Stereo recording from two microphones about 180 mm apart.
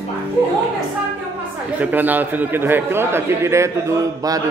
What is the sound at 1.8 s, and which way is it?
A man's voice, 10° right (ahead or behind).